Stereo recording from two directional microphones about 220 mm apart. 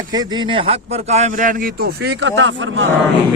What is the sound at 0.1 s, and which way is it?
A man's voice, 20° right (ahead or behind).